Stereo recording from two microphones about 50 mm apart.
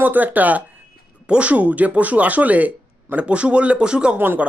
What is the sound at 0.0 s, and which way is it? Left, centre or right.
Speech, right.